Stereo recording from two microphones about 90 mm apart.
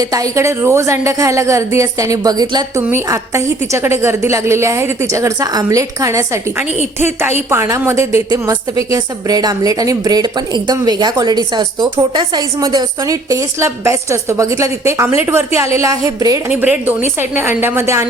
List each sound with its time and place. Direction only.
0.0 s a woman's voice: 40° right (ahead or behind)
2.7 s a woman's voice: 35° right (ahead or behind)
8.3 s a woman's voice: 45° right (ahead or behind)
16.5 s a woman's voice: 20° right (ahead or behind)